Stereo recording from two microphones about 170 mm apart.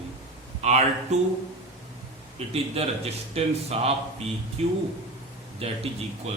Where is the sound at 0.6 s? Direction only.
45° right (ahead or behind).